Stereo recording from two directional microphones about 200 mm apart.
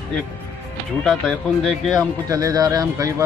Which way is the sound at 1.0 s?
Centre (ahead or behind).